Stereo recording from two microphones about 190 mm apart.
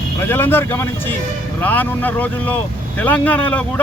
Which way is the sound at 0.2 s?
10° left (ahead or behind).